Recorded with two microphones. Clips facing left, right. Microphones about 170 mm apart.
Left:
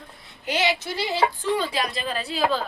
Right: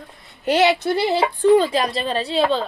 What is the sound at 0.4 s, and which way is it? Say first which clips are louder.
Speech: right 8 dB; 65° right (ahead or behind).